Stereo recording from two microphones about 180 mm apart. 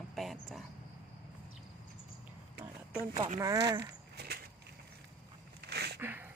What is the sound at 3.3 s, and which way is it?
Speech, 20° right (ahead or behind).